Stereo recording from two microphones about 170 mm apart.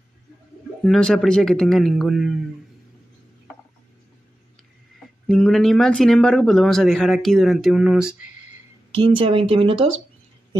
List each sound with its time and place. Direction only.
0.8 s speech: 5° left (ahead or behind)
5.2 s speech: 5° left (ahead or behind)
8.9 s speech: 30° right (ahead or behind)